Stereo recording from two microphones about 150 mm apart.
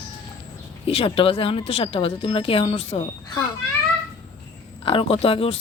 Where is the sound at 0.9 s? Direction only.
40° left (ahead or behind).